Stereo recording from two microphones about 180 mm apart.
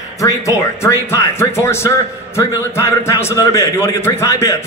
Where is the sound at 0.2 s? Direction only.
15° left (ahead or behind).